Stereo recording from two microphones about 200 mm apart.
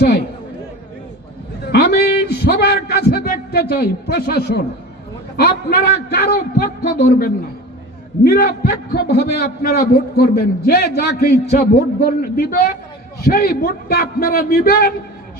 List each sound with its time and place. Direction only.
1.7 s a man's voice: 55° left (ahead or behind)